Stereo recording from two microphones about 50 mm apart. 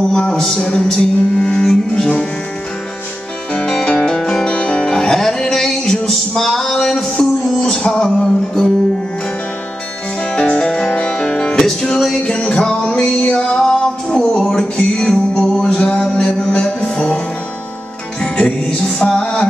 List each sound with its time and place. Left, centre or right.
0.3 s music: centre
3.7 s music: centre
10.3 s music: centre
12.2 s music: left
15.8 s music: left
18.2 s music: left